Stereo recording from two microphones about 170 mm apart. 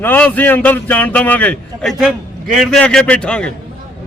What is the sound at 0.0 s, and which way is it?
A man's voice, 10° left (ahead or behind).